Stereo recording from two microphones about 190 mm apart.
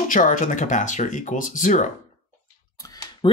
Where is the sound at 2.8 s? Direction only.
20° left (ahead or behind).